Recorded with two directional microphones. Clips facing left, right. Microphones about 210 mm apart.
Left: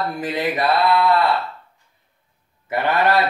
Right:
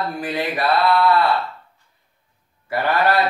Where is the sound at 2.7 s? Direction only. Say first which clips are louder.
Even; 20° left (ahead or behind).